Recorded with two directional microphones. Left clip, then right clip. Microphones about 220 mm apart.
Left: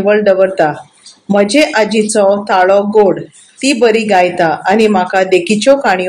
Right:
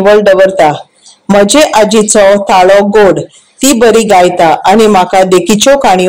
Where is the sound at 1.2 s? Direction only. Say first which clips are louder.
Right 5 dB; 30° right (ahead or behind).